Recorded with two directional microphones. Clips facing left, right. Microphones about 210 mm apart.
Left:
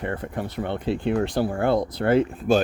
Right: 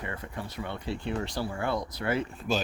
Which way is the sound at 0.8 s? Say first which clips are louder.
Left 10 dB; 20° left (ahead or behind).